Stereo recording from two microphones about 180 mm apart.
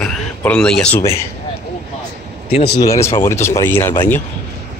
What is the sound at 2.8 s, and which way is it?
Speech, 20° left (ahead or behind).